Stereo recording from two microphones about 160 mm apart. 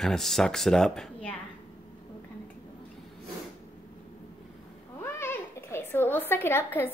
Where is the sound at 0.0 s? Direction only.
Centre (ahead or behind).